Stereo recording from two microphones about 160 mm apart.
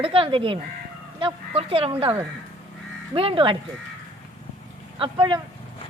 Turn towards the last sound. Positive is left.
turn(degrees=-30)  # may be behind; listen again after turning